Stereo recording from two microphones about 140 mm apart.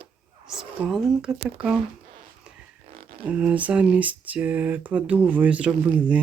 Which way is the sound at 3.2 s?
10° right (ahead or behind).